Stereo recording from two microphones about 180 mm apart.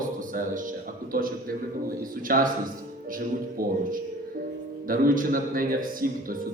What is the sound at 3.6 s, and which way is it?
Speech, 55° right (ahead or behind).